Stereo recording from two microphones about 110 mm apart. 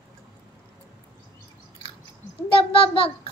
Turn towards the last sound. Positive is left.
turn(degrees=55)  # may be behind; listen again after turning